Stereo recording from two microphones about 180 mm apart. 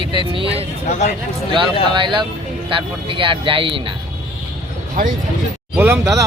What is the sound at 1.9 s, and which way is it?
Speech, 25° right (ahead or behind).